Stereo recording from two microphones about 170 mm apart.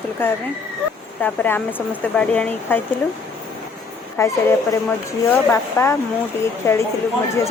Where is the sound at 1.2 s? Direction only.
10° left (ahead or behind).